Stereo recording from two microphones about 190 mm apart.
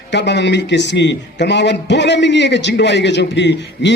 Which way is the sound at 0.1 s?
65° left (ahead or behind).